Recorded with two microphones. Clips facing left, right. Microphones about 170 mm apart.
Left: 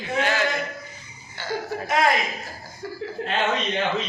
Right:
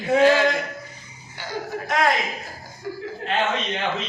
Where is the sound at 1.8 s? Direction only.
Centre (ahead or behind).